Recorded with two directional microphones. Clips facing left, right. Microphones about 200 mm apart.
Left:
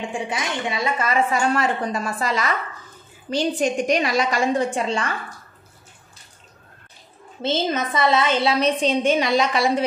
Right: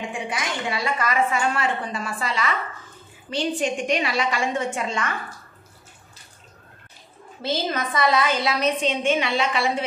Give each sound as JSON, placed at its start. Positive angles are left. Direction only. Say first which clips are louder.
{"t": 0.3, "sound": "a woman's voice", "louder": "left 2 dB", "side_deg": 25}
{"t": 1.3, "sound": "a woman's voice", "louder": "left 3 dB", "side_deg": 40}
{"t": 7.4, "sound": "a woman's voice", "louder": "left 3 dB", "side_deg": 25}